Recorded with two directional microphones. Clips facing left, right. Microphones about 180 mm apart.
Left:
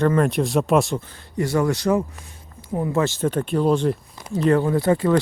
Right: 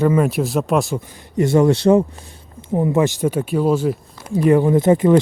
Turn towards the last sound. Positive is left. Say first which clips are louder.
# right 5 dB
turn(degrees=-20)  # may be behind; listen again after turning